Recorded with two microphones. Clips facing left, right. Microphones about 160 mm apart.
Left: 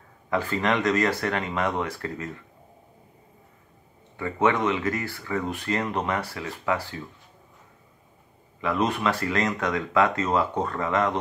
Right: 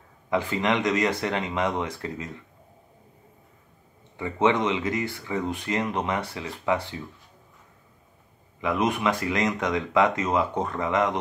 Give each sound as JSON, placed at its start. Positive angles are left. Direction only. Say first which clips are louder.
{"t": 0.3, "sound": "speech", "louder": "even", "side_deg": -20}
{"t": 4.2, "sound": "speech", "louder": "even", "side_deg": -20}
{"t": 8.5, "sound": "speech", "louder": "even", "side_deg": -15}